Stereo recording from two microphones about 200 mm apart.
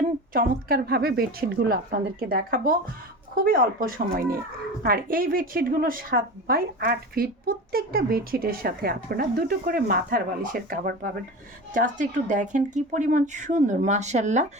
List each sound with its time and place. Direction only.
0.3 s a woman's voice: 50° right (ahead or behind)